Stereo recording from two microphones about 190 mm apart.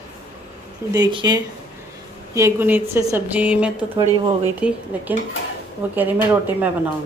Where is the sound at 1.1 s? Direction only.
20° right (ahead or behind).